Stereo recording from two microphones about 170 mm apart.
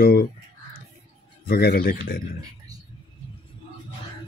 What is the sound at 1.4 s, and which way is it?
Speech, 65° left (ahead or behind).